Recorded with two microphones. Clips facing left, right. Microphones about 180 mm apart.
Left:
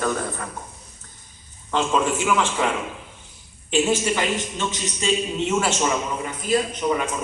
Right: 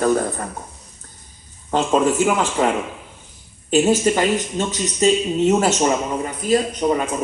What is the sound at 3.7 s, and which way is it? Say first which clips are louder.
Speech: right 5 dB; 40° right (ahead or behind).